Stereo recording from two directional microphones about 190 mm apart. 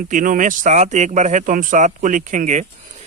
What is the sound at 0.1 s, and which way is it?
Speech, 45° right (ahead or behind).